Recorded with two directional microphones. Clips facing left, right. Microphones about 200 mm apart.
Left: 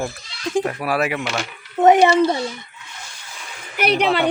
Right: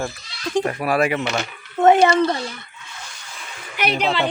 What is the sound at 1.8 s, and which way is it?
Speech, 15° left (ahead or behind).